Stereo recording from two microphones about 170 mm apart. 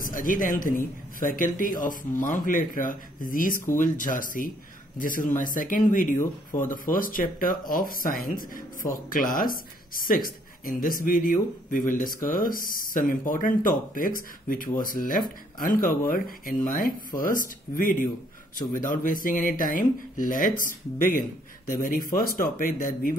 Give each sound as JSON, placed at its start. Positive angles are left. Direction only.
{"t": 0.0, "sound": "speech", "side_deg": 55}
{"t": 6.1, "sound": "speech", "side_deg": 15}
{"t": 6.7, "sound": "speech", "side_deg": 55}